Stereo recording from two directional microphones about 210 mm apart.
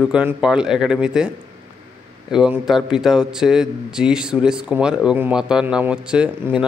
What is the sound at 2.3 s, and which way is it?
A man's voice, 5° right (ahead or behind).